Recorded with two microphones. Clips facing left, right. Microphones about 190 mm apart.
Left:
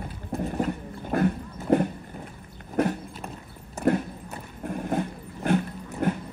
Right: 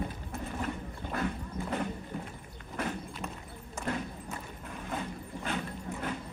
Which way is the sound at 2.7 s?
55° left (ahead or behind).